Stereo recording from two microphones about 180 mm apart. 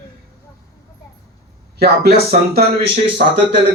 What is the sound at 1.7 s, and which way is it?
Speech, 60° right (ahead or behind).